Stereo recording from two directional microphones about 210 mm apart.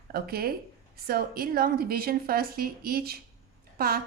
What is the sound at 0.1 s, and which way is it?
Speech, 45° right (ahead or behind).